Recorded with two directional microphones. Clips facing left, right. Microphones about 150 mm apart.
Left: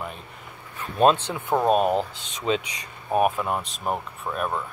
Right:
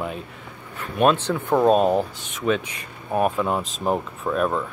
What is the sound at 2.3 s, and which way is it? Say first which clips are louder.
Speech: right 2 dB; 20° left (ahead or behind).